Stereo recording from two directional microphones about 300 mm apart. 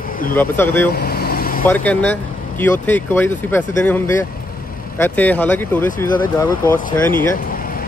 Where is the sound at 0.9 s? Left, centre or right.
Left.